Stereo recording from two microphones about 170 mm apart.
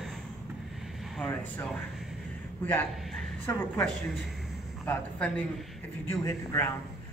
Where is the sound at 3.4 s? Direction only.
10° left (ahead or behind).